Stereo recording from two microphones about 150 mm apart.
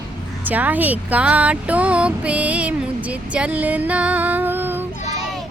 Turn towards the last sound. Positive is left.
turn(degrees=-15)  # may be behind; listen again after turning